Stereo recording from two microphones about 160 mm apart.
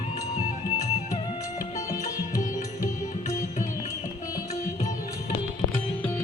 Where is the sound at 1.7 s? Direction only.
20° left (ahead or behind).